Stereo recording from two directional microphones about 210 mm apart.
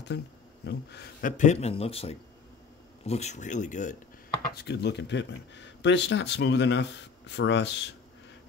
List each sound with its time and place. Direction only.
0.7 s speech: 50° left (ahead or behind)
1.3 s speech: 35° left (ahead or behind)
4.6 s speech: 55° left (ahead or behind)